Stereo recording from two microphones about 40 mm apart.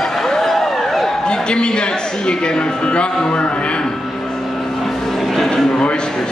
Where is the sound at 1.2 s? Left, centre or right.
Left.